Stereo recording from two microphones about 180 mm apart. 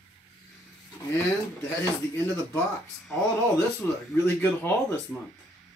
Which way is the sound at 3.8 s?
10° left (ahead or behind).